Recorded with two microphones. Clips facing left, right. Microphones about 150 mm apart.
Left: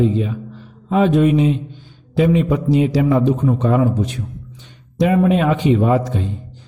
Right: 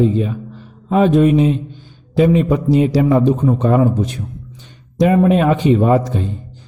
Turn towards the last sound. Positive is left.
turn(degrees=-40)  # may be behind; listen again after turning